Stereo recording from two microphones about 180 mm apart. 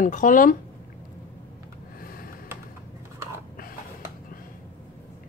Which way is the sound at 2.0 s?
55° left (ahead or behind).